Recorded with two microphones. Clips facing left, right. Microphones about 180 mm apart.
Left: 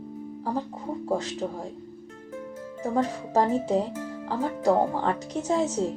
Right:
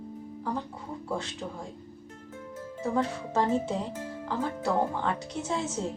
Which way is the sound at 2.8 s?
40° left (ahead or behind).